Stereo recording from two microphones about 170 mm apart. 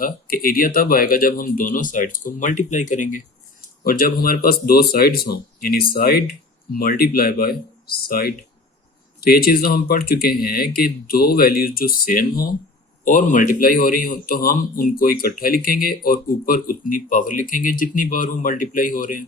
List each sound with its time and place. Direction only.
0.0 s a man's voice: 60° left (ahead or behind)